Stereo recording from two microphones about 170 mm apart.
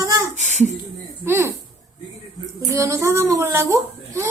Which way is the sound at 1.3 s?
15° right (ahead or behind).